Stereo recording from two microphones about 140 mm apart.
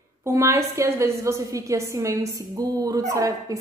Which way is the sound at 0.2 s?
20° right (ahead or behind).